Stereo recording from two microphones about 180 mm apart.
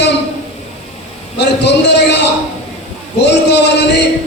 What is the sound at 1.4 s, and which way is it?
Speech, 70° left (ahead or behind).